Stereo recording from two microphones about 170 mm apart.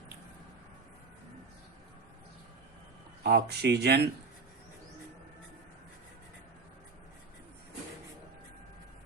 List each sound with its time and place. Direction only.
3.2 s speech: 75° right (ahead or behind)